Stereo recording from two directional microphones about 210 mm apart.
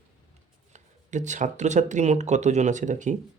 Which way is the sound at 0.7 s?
35° right (ahead or behind).